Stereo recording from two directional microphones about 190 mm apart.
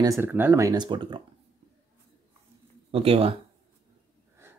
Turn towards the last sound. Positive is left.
turn(degrees=-30)  # may be behind; listen again after turning